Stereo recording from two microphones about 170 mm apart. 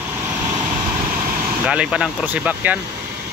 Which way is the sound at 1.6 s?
5° right (ahead or behind).